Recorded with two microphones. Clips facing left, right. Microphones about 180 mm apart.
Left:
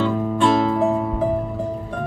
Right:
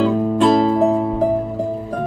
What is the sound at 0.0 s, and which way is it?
Music, 40° right (ahead or behind).